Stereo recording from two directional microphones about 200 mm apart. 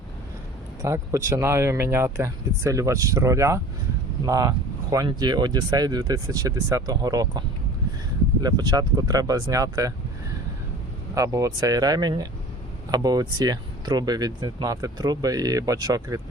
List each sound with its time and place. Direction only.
0.8 s speech: 15° right (ahead or behind)
11.1 s speech: 15° right (ahead or behind)